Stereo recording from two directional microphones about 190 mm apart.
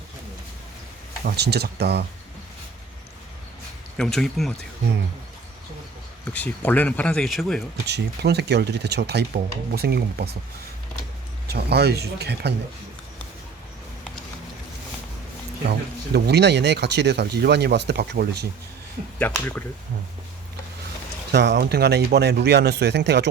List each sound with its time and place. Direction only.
1.2 s speech: 60° right (ahead or behind)
3.9 s speech: centre (ahead or behind)
6.2 s speech: 5° left (ahead or behind)
7.9 s speech: 60° right (ahead or behind)
11.4 s speech: 60° right (ahead or behind)
16.1 s speech: 60° right (ahead or behind)
19.2 s speech: 10° left (ahead or behind)
21.3 s speech: 65° right (ahead or behind)